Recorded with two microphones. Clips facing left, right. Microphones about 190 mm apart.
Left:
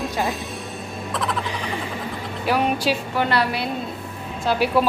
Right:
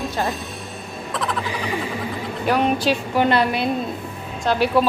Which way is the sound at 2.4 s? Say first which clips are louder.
Right 2 dB; 5° left (ahead or behind).